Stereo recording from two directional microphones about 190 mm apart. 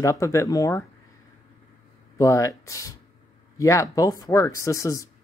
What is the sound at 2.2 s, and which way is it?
Speech, 15° left (ahead or behind).